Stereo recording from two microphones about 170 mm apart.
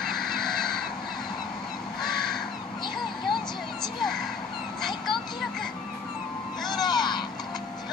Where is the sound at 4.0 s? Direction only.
Centre (ahead or behind).